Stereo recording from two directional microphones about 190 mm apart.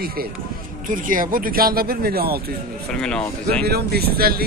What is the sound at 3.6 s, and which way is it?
Speech, 55° right (ahead or behind).